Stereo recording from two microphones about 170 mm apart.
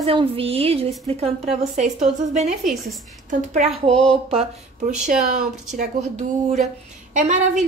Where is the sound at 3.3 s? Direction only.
50° right (ahead or behind).